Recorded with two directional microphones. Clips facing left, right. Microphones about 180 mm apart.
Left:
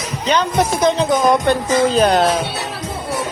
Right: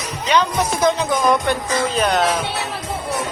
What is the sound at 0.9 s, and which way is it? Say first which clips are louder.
Speech: left 2 dB; 30° left (ahead or behind).